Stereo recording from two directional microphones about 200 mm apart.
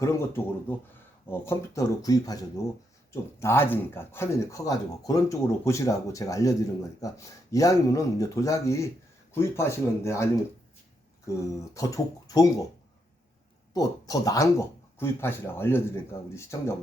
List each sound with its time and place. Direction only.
0.0 s speech: 10° left (ahead or behind)
11.3 s speech: 15° left (ahead or behind)
13.7 s speech: 20° left (ahead or behind)